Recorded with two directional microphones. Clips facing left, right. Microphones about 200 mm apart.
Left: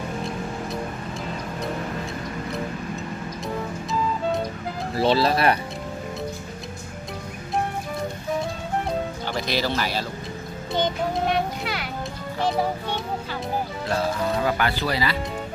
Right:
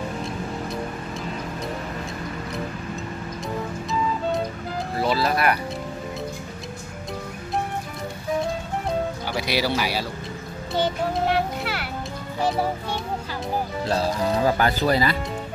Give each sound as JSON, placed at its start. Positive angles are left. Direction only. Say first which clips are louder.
{"t": 4.9, "sound": "speech", "louder": "left 3 dB", "side_deg": 30}
{"t": 9.3, "sound": "speech", "louder": "right 1 dB", "side_deg": -10}
{"t": 10.7, "sound": "music", "louder": "even", "side_deg": -5}
{"t": 12.4, "sound": "speech", "louder": "even", "side_deg": -5}
{"t": 13.8, "sound": "speech", "louder": "right 1 dB", "side_deg": -35}